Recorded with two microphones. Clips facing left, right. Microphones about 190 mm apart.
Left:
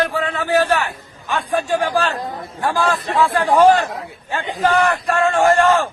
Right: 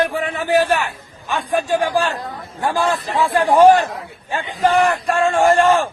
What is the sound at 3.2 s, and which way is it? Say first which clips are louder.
Speech: right 1 dB; 15° right (ahead or behind).